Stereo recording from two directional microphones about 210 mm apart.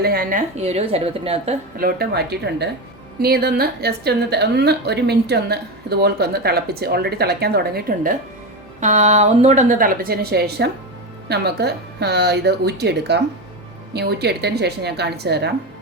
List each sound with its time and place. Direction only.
0.0 s a woman's voice: 45° right (ahead or behind); by 1.5 s 30° right (ahead or behind)
1.8 s a woman's voice: 50° right (ahead or behind)
8.8 s a woman's voice: 35° right (ahead or behind); by 15.5 s 50° right (ahead or behind)